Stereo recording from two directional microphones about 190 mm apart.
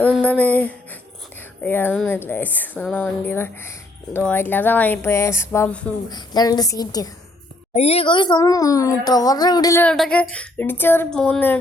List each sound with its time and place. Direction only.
0.0 s a sound: 5° left (ahead or behind)
1.6 s a woman's voice: 10° left (ahead or behind)
6.1 s a woman's voice: 20° left (ahead or behind)
7.7 s a woman's voice: 35° left (ahead or behind)
9.8 s a woman's voice: 5° left (ahead or behind)